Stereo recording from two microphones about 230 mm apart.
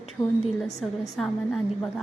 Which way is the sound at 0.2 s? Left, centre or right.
Centre.